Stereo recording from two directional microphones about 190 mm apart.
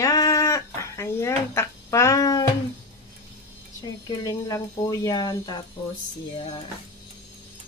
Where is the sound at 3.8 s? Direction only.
20° left (ahead or behind).